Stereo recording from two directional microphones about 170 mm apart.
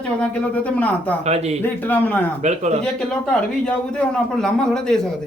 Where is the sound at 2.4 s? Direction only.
40° right (ahead or behind).